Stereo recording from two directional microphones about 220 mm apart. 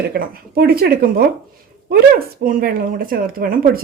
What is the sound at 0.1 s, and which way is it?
Speech, 45° right (ahead or behind).